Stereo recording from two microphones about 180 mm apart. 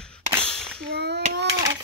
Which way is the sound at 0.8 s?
65° right (ahead or behind).